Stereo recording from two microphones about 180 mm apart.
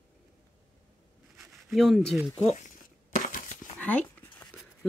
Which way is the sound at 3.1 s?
50° left (ahead or behind).